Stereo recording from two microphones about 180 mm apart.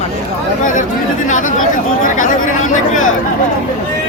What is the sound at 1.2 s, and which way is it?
Chatter, 45° left (ahead or behind).